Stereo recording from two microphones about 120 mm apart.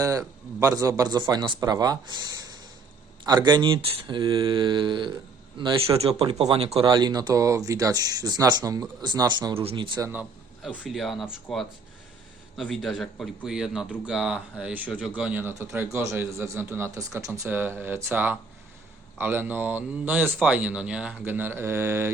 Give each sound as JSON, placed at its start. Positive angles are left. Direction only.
{"t": 0.0, "sound": "speech", "side_deg": -30}
{"t": 6.0, "sound": "speech", "side_deg": -55}
{"t": 6.8, "sound": "speech", "side_deg": -35}
{"t": 9.6, "sound": "speech", "side_deg": -50}
{"t": 10.7, "sound": "speech", "side_deg": 0}
{"t": 12.5, "sound": "a man's voice", "side_deg": 0}
{"t": 17.5, "sound": "speech", "side_deg": -15}